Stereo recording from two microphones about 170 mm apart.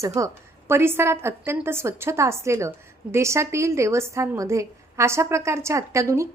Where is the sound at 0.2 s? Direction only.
20° right (ahead or behind).